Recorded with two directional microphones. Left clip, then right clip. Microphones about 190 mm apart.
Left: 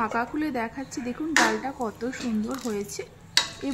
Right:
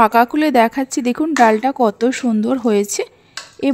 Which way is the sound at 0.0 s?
45° right (ahead or behind).